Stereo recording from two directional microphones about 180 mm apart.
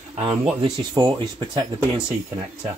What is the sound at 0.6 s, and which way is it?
Speech, 25° right (ahead or behind).